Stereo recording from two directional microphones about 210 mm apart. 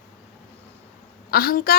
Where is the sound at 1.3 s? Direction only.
45° left (ahead or behind).